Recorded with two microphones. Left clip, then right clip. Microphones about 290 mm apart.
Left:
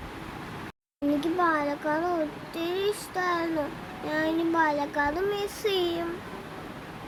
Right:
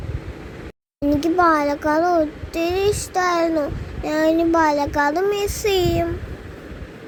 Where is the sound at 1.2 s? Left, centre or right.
Right.